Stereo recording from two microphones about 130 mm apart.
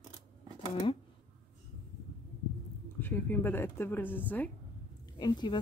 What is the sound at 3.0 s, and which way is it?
Speech, 15° left (ahead or behind).